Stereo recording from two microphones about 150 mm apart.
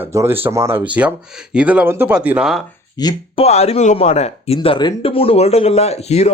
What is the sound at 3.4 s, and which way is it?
Speech, 45° left (ahead or behind).